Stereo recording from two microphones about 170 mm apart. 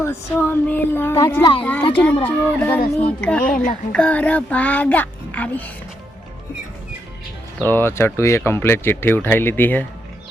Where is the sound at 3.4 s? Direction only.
55° left (ahead or behind).